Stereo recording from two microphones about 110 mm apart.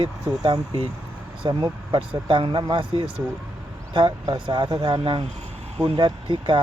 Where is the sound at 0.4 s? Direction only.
50° right (ahead or behind).